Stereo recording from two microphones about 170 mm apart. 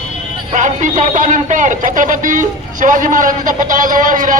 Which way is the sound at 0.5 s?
45° right (ahead or behind).